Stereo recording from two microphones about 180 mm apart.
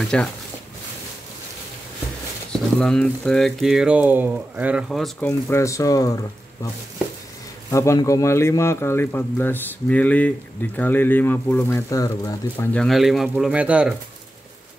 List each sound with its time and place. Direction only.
0.0 s speech: 5° left (ahead or behind)
2.5 s speech: 5° left (ahead or behind)
5.5 s speech: 15° left (ahead or behind)
7.7 s speech: 15° left (ahead or behind)
12.7 s speech: centre (ahead or behind)